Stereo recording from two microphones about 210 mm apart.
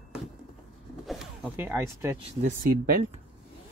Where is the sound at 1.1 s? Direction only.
Centre (ahead or behind).